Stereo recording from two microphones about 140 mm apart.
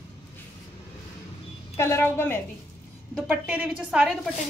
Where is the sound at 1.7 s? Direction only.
20° left (ahead or behind).